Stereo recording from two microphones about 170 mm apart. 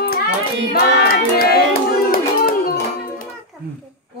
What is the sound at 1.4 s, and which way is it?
Music, 65° left (ahead or behind).